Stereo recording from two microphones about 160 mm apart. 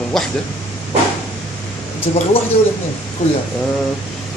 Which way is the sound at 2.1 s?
40° left (ahead or behind).